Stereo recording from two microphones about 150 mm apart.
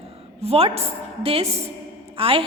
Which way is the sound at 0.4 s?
40° right (ahead or behind).